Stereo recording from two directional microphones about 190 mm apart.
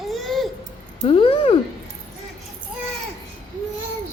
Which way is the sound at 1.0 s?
30° left (ahead or behind).